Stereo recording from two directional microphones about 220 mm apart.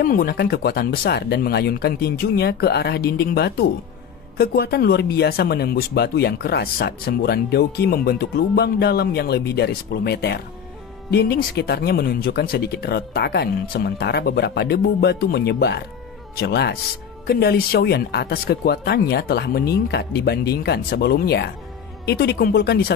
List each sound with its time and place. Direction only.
0.0 s speech: 40° left (ahead or behind)